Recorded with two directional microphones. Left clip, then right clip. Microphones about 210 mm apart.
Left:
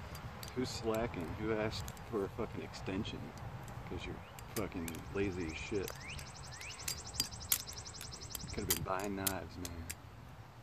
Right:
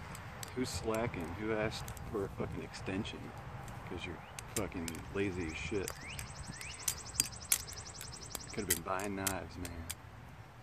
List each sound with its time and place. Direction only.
0.6 s speech: 15° right (ahead or behind)
4.6 s speech: centre (ahead or behind)
5.7 s speech: 20° right (ahead or behind)
6.9 s a sound: 5° right (ahead or behind)
8.8 s speech: 10° right (ahead or behind)